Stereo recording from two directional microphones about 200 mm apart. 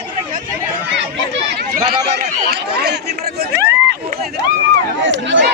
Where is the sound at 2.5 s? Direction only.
55° right (ahead or behind).